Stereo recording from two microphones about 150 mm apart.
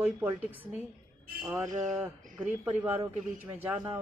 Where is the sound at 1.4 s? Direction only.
20° right (ahead or behind).